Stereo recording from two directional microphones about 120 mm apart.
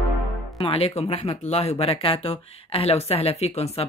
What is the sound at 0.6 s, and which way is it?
Speech, 55° left (ahead or behind).